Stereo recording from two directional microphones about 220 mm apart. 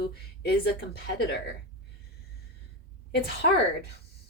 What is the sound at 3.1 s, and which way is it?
Speech, 45° left (ahead or behind).